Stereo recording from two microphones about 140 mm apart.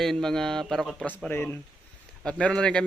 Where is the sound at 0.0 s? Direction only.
5° left (ahead or behind).